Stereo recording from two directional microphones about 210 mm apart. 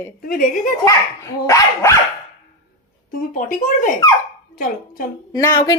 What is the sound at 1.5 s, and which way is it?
Speech, 15° left (ahead or behind).